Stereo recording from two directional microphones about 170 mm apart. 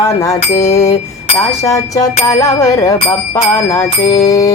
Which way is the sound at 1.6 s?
20° left (ahead or behind).